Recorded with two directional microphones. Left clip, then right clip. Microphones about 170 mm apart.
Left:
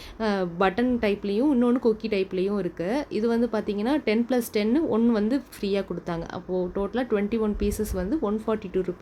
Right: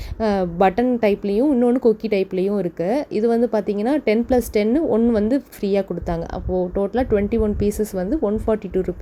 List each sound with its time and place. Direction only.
0.2 s a woman's voice: 20° right (ahead or behind)